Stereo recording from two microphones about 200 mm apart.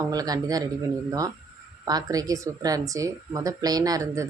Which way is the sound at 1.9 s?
20° right (ahead or behind).